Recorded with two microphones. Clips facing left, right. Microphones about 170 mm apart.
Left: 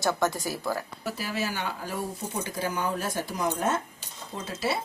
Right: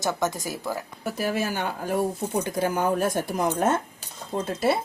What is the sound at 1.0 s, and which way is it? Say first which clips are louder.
A woman's voice: right 5 dB; 50° right (ahead or behind).